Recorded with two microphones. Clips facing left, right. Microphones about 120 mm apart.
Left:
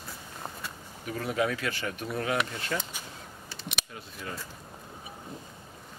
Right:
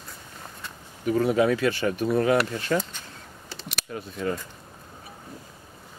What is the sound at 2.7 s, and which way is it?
Speech, 60° right (ahead or behind).